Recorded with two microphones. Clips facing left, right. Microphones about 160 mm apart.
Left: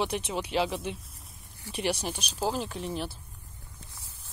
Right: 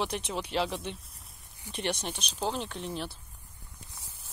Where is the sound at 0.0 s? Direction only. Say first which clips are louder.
Left 2 dB; centre (ahead or behind).